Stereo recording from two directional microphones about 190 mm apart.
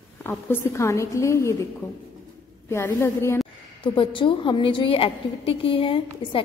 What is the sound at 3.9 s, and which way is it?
A woman's voice, 25° left (ahead or behind).